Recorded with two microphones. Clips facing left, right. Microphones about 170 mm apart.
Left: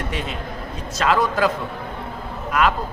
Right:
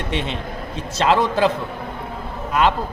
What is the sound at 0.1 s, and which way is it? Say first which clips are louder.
A man's voice: right 3 dB; 25° right (ahead or behind).